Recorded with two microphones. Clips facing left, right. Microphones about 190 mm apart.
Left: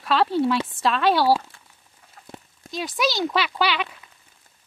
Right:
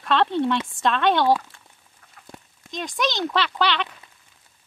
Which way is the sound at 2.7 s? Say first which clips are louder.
Left 1 dB; 5° left (ahead or behind).